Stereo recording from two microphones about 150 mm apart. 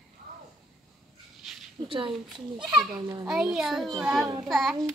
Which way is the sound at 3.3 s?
5° right (ahead or behind).